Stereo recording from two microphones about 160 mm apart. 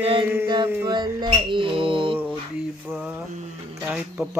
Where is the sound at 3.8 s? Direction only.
10° right (ahead or behind).